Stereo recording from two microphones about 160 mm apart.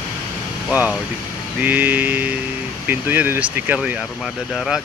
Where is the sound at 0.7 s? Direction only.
10° right (ahead or behind).